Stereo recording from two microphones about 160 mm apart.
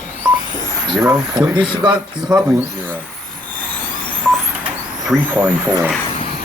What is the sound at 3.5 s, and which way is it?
Vehicle, 10° left (ahead or behind).